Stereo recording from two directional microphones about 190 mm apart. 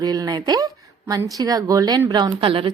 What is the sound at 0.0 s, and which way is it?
A woman's voice, 20° right (ahead or behind).